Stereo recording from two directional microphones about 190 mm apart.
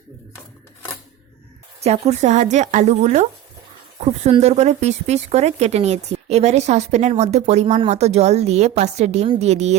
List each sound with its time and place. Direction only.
1.8 s speech: 35° right (ahead or behind)